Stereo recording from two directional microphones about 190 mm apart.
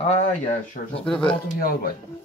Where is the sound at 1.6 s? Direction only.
50° left (ahead or behind).